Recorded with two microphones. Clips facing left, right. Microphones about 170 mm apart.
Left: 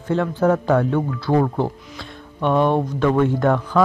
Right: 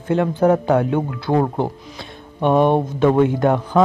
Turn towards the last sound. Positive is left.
turn(degrees=-20)  # may be behind; listen again after turning